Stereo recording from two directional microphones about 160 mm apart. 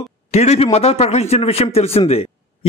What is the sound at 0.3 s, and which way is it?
A man's voice, 45° left (ahead or behind).